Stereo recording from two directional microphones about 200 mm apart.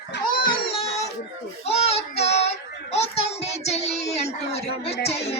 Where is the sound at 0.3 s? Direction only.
25° left (ahead or behind).